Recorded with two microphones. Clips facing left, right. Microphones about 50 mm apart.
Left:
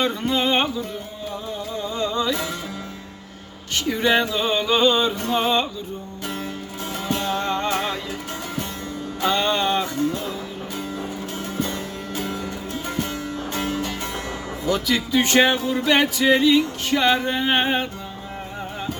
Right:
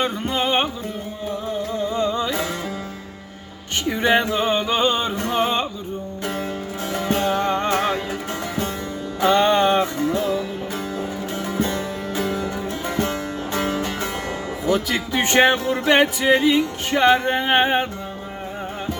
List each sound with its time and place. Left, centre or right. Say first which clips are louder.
0.0 s music: left 1 dB; right
1.8 s music: right 1 dB; right
3.8 s music: right 1 dB; right
4.0 s music: right 2 dB; right
5.2 s music: even; right
6.9 s music: right 4 dB; right
9.2 s music: right 5 dB; right
11.6 s music: right 4 dB; right
14.7 s music: even; right
15.5 s music: right 2 dB; right
16.0 s music: even; right